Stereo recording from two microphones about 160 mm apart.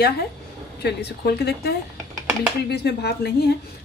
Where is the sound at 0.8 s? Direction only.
90° left.